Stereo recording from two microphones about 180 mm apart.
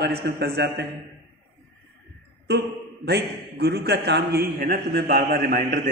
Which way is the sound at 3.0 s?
65° right (ahead or behind).